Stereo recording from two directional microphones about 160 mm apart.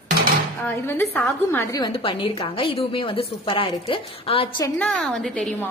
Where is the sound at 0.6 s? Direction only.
15° left (ahead or behind).